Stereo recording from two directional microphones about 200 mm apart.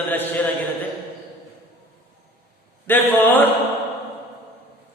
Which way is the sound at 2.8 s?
10° left (ahead or behind).